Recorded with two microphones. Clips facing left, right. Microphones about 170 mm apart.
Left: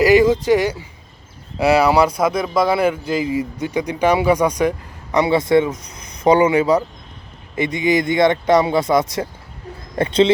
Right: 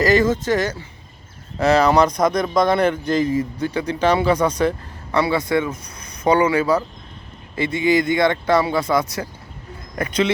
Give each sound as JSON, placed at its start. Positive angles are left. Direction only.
{"t": 0.0, "sound": "speech", "side_deg": 15}